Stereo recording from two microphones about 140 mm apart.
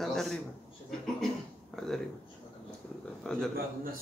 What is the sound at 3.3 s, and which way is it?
Speech, 5° left (ahead or behind).